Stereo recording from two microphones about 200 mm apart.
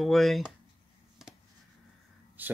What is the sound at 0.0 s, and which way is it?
Speech, centre (ahead or behind).